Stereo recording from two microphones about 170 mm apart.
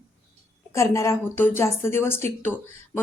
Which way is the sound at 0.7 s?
15° left (ahead or behind).